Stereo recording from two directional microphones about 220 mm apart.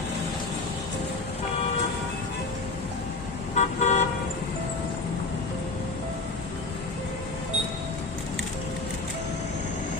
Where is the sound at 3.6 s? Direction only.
30° left (ahead or behind).